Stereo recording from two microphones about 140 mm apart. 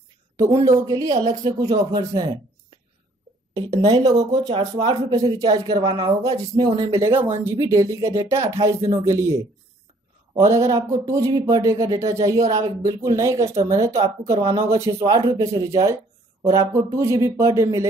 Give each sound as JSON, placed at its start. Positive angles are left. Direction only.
{"t": 0.4, "sound": "speech", "side_deg": -25}
{"t": 3.7, "sound": "speech", "side_deg": -25}